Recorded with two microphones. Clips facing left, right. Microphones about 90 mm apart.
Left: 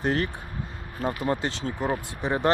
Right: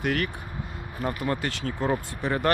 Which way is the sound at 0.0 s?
30° left (ahead or behind).